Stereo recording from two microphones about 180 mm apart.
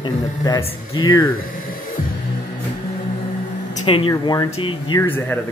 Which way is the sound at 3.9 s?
30° left (ahead or behind).